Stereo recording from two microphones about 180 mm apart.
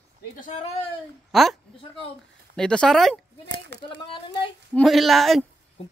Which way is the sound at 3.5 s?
70° right (ahead or behind).